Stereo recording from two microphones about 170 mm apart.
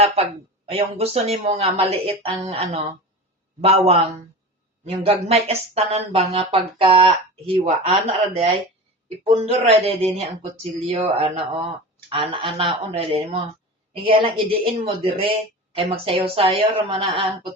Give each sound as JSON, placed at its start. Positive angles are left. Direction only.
{"t": 0.7, "sound": "speech", "side_deg": -35}